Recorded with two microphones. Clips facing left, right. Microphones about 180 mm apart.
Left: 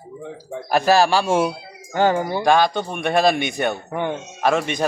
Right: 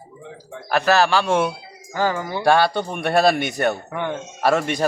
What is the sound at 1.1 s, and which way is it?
Speech, 10° left (ahead or behind).